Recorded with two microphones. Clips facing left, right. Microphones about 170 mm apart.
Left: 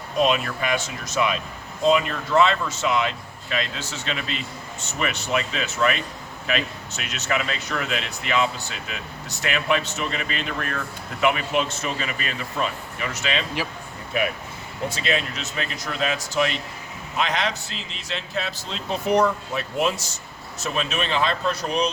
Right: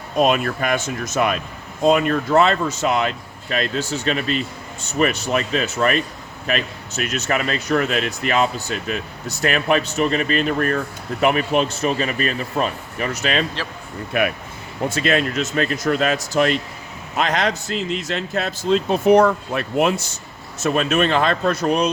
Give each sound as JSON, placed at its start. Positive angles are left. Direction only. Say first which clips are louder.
{"t": 0.2, "sound": "speech", "louder": "right 4 dB", "side_deg": -50}
{"t": 14.1, "sound": "speech", "louder": "right 4 dB", "side_deg": -65}
{"t": 14.8, "sound": "speech", "louder": "right 6 dB", "side_deg": -50}